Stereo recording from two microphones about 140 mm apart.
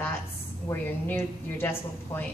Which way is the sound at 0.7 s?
15° left (ahead or behind).